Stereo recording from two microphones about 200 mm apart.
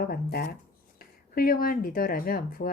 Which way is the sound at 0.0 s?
50° left (ahead or behind).